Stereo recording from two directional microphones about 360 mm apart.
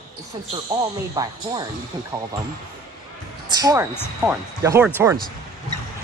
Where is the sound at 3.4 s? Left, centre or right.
Centre.